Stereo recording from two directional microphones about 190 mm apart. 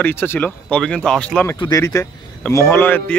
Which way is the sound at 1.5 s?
20° left (ahead or behind).